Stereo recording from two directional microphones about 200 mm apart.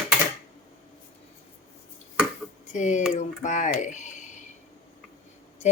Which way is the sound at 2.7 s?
35° left (ahead or behind).